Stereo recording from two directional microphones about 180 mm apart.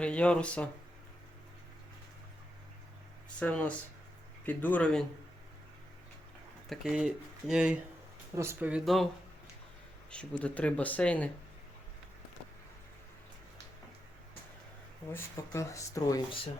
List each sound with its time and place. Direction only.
0.0 s speech: 5° left (ahead or behind)
3.2 s speech: 5° left (ahead or behind)
6.7 s speech: 5° right (ahead or behind)
10.1 s speech: 5° left (ahead or behind)
15.1 s speech: 15° left (ahead or behind)